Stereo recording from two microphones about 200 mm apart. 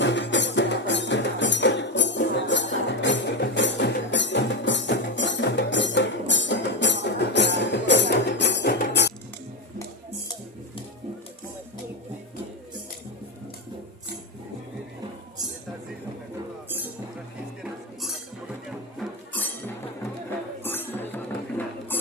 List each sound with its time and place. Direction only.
0.0 s music: 65° left (ahead or behind)
18.9 s music: 10° left (ahead or behind)
21.6 s a sound: 10° left (ahead or behind)